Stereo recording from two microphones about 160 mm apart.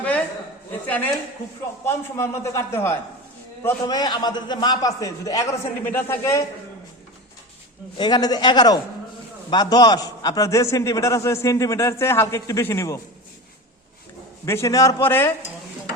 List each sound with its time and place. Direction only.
0.9 s a man's voice: 10° left (ahead or behind)
3.8 s a man's voice: 25° left (ahead or behind)
7.9 s a man's voice: 25° left (ahead or behind)
14.4 s a man's voice: 15° left (ahead or behind)